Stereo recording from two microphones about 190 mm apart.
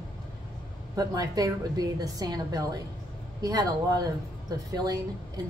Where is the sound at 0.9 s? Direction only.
20° right (ahead or behind).